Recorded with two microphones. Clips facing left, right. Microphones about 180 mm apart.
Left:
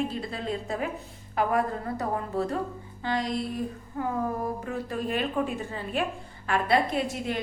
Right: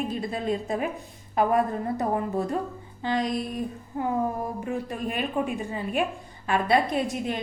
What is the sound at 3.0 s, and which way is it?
Music, 20° right (ahead or behind).